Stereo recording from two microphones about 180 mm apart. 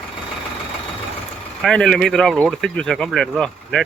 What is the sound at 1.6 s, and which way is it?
Speech, centre (ahead or behind).